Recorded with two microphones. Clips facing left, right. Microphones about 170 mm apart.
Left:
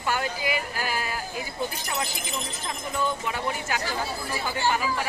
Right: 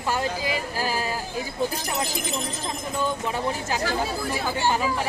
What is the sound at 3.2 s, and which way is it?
Speech, 30° right (ahead or behind).